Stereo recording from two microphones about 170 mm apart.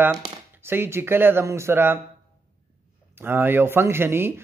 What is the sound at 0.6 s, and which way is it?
Speech, 15° right (ahead or behind).